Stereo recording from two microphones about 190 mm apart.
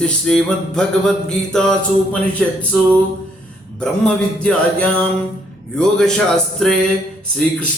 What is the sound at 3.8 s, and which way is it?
Mantra, 5° left (ahead or behind).